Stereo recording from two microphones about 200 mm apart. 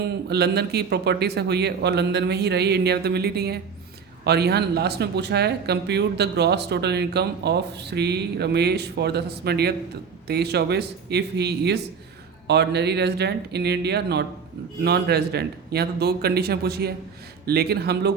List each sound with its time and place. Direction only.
0.3 s a man's voice: 55° right (ahead or behind)